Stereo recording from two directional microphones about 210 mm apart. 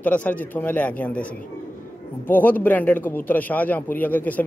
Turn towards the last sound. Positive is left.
turn(degrees=10)  # may be behind; listen again after turning